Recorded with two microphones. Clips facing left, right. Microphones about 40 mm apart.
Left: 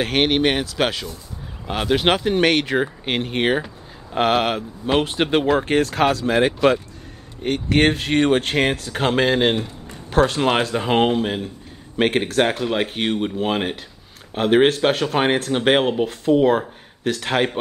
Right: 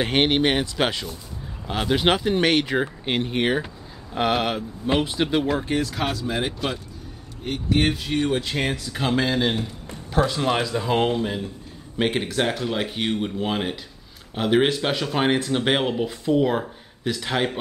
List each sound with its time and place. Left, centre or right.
0.0 s speech: centre
1.7 s speech: centre
3.1 s speech: left
5.7 s speech: left
14.9 s speech: left
15.5 s speech: left